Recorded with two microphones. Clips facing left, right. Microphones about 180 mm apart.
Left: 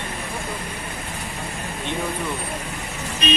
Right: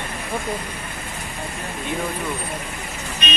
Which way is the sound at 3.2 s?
35° left (ahead or behind).